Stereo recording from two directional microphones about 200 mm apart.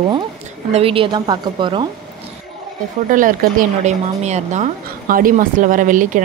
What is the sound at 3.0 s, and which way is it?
Speech, 40° right (ahead or behind).